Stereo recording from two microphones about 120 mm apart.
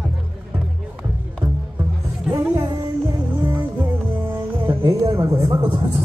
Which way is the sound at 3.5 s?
15° right (ahead or behind).